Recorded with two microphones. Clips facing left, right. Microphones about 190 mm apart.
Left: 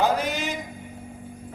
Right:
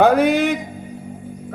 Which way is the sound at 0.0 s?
60° right (ahead or behind).